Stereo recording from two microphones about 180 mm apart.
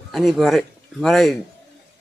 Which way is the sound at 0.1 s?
Centre (ahead or behind).